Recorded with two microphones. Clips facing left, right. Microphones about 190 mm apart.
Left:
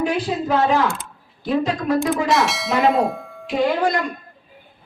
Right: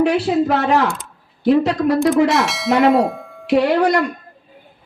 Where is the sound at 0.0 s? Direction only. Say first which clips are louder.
Right 6 dB; 70° right (ahead or behind).